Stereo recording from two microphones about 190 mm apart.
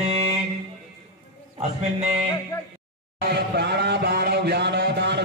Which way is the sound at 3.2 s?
60° right (ahead or behind).